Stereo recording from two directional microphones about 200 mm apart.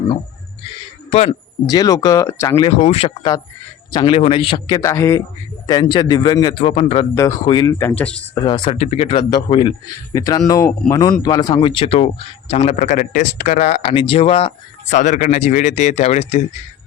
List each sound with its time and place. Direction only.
1.7 s speech: 20° left (ahead or behind)
2.6 s a man's voice: 30° left (ahead or behind); by 8.2 s 5° left (ahead or behind)
8.4 s a man's voice: 25° left (ahead or behind)
14.8 s a man's voice: 40° left (ahead or behind)